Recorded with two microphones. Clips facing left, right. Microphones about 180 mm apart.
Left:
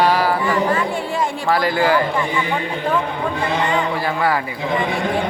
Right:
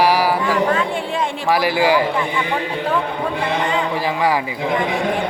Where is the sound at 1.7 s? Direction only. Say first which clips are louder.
Right 1 dB; 10° right (ahead or behind).